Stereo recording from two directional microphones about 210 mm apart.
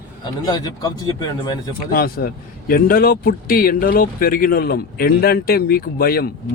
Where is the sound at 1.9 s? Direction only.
45° left (ahead or behind).